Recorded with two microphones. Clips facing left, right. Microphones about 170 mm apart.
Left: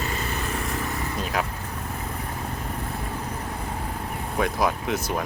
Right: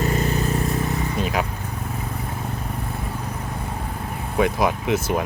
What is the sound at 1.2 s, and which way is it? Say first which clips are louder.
Vehicle: right 3 dB; centre (ahead or behind).